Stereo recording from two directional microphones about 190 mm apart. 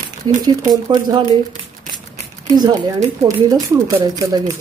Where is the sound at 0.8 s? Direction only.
25° right (ahead or behind).